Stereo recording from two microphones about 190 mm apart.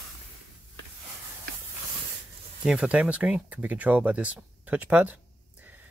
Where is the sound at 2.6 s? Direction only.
5° right (ahead or behind).